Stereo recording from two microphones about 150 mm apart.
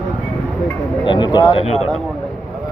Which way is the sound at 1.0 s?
30° left (ahead or behind).